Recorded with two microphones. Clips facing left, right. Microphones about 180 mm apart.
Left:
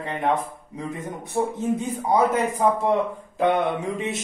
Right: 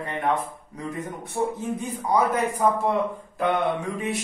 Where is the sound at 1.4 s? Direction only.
35° left (ahead or behind).